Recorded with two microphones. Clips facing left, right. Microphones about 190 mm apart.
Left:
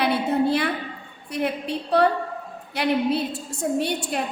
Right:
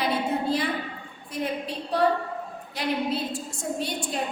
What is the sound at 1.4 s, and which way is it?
A woman's voice, 65° left (ahead or behind).